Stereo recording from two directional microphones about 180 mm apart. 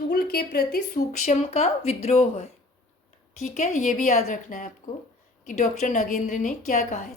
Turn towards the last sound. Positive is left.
turn(degrees=45)  # may be behind; listen again after turning